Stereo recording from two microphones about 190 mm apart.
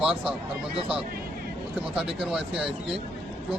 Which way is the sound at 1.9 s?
5° right (ahead or behind).